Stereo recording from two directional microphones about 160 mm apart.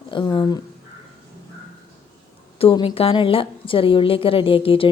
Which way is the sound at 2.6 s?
35° left (ahead or behind).